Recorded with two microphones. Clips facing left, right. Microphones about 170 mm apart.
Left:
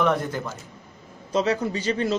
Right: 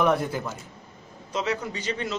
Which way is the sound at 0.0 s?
10° right (ahead or behind).